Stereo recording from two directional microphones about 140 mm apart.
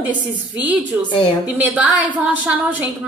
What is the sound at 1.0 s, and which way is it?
Speech, 35° left (ahead or behind).